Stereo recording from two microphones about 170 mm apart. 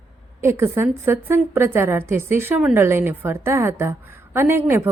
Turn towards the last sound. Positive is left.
turn(degrees=-15)  # may be behind; listen again after turning